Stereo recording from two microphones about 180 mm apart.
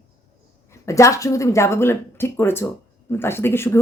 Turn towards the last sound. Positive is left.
turn(degrees=15)  # may be behind; listen again after turning